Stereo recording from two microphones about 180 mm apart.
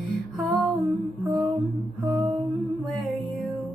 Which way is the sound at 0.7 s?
20° right (ahead or behind).